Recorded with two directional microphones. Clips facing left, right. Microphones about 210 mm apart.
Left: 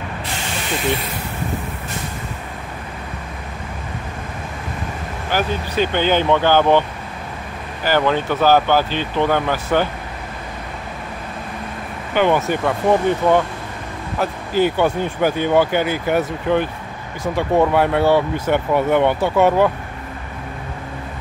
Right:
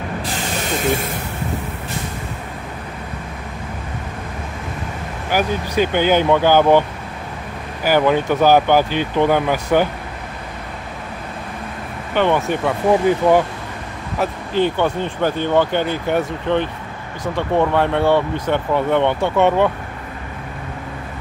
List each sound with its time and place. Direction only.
0.8 s speech: 45° right (ahead or behind)
5.3 s speech: 10° right (ahead or behind)
7.8 s speech: 10° right (ahead or behind)
12.1 s speech: centre (ahead or behind)
14.1 s speech: centre (ahead or behind)